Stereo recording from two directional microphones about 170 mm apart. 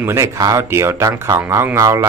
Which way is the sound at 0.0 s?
15° right (ahead or behind).